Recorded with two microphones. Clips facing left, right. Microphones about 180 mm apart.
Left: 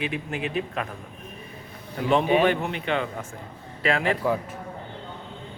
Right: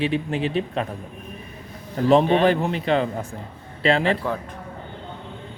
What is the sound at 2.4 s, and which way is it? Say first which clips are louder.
A man's voice: right 4 dB; 35° right (ahead or behind).